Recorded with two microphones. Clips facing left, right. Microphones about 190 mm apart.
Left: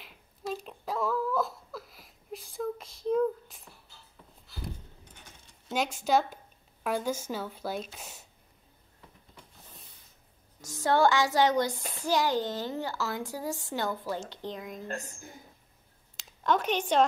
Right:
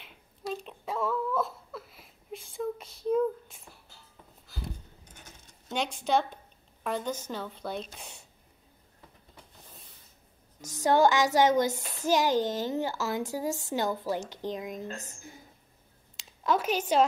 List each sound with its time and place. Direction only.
0.5 s a sound: centre (ahead or behind)
6.0 s a woman's voice: 5° left (ahead or behind)
10.6 s speech: 20° right (ahead or behind)
16.2 s speech: 5° right (ahead or behind)